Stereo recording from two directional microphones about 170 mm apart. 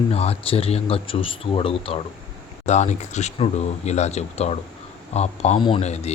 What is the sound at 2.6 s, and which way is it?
Speech, 45° left (ahead or behind).